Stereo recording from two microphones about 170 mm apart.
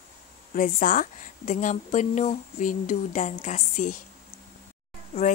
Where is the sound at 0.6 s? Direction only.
55° left (ahead or behind).